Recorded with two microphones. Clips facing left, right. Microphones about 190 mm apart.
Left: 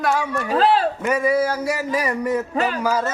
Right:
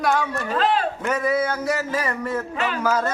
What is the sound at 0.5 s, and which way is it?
Speech, 35° left (ahead or behind).